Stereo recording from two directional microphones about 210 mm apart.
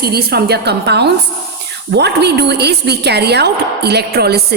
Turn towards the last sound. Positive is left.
turn(degrees=-50)  # may be behind; listen again after turning